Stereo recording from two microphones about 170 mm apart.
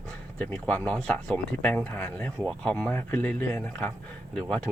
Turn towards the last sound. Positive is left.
turn(degrees=5)  # may be behind; listen again after turning